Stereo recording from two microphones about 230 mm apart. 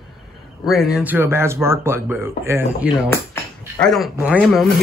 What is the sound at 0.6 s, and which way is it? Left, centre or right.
Speech, centre.